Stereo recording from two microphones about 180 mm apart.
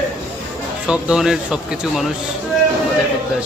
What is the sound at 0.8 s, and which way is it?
Speech, 5° right (ahead or behind).